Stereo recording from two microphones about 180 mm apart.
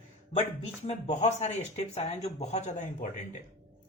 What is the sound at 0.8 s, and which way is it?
Speech, 40° left (ahead or behind).